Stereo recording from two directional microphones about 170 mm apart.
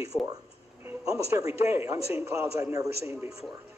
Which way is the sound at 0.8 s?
20° right (ahead or behind).